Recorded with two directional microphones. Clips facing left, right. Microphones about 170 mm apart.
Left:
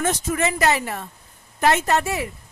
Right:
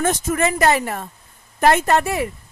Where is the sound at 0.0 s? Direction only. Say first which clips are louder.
Right 3 dB; 50° right (ahead or behind).